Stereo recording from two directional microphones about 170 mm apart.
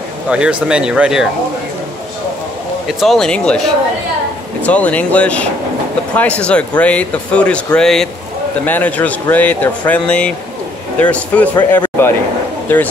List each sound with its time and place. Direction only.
0.3 s speech: 5° right (ahead or behind)
2.9 s speech: centre (ahead or behind)
4.6 s speech: 10° left (ahead or behind)